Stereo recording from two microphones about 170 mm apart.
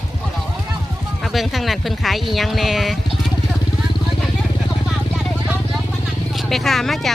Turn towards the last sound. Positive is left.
turn(degrees=0)  # may be behind; listen again after turning